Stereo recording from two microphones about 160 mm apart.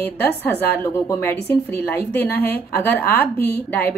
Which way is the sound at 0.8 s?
15° left (ahead or behind).